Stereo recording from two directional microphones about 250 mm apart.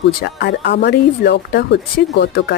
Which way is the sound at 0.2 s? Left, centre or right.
Left.